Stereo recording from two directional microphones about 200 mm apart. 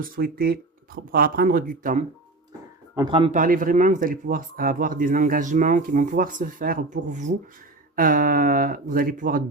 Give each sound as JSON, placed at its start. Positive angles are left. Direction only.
{"t": 0.0, "sound": "speech", "side_deg": -50}
{"t": 3.1, "sound": "a man's voice", "side_deg": -30}
{"t": 3.4, "sound": "speech", "side_deg": -40}